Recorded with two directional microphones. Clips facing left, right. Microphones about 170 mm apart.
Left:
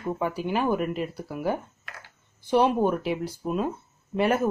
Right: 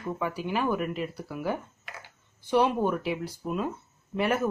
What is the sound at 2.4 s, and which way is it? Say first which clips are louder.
Speech: left 3 dB; 25° left (ahead or behind).